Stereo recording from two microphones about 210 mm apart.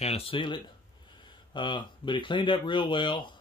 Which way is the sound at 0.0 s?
25° left (ahead or behind).